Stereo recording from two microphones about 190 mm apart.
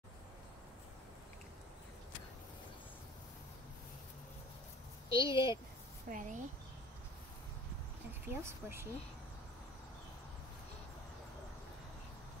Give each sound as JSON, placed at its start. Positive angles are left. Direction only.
{"t": 5.1, "sound": "a woman's voice", "side_deg": 25}
{"t": 6.0, "sound": "a woman's voice", "side_deg": -45}
{"t": 8.1, "sound": "speech", "side_deg": -10}